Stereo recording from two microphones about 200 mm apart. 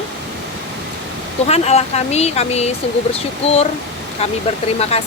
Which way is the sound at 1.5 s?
30° left (ahead or behind).